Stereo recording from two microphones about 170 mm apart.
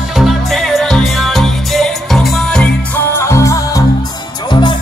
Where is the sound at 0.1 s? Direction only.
Centre (ahead or behind).